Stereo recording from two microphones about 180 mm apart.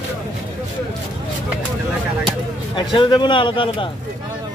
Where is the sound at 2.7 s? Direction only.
25° left (ahead or behind).